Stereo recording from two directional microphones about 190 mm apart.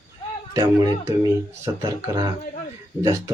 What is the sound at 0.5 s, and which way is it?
Speech, 20° right (ahead or behind).